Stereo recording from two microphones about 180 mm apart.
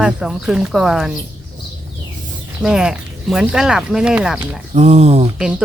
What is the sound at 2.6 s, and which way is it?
Speech, 5° right (ahead or behind).